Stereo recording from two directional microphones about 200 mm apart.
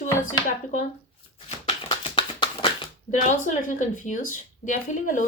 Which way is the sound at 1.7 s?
25° left (ahead or behind).